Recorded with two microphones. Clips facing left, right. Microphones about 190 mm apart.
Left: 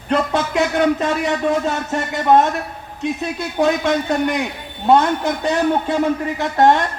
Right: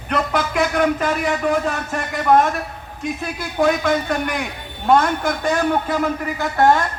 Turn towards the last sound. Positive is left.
turn(degrees=30)  # may be behind; listen again after turning